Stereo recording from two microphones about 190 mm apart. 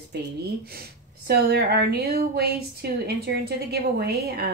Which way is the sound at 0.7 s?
60° right (ahead or behind).